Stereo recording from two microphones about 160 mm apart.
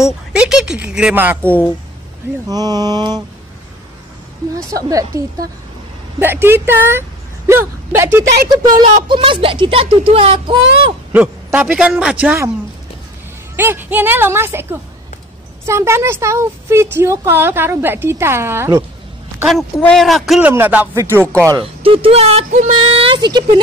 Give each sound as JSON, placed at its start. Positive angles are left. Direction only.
{"t": 0.0, "sound": "a woman's voice", "side_deg": -5}
{"t": 1.4, "sound": "speech", "side_deg": 10}
{"t": 2.4, "sound": "a sound", "side_deg": -25}
{"t": 4.6, "sound": "a sound", "side_deg": -20}
{"t": 6.1, "sound": "speech", "side_deg": -15}
{"t": 8.7, "sound": "speech", "side_deg": -30}
{"t": 11.1, "sound": "a woman's voice", "side_deg": -10}
{"t": 13.6, "sound": "a woman's voice", "side_deg": -15}
{"t": 19.8, "sound": "a woman's voice", "side_deg": 0}
{"t": 21.5, "sound": "speech", "side_deg": -35}